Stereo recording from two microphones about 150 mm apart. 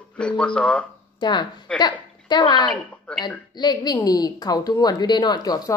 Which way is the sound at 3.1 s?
5° left (ahead or behind).